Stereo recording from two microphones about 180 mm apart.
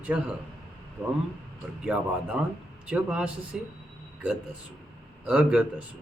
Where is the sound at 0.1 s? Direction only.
10° right (ahead or behind).